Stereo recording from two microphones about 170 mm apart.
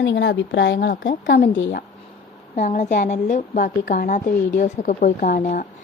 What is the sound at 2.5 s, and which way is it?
A woman's voice, 45° left (ahead or behind).